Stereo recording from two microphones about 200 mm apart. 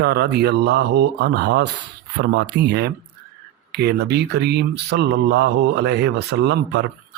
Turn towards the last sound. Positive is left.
turn(degrees=-55)  # may be behind; listen again after turning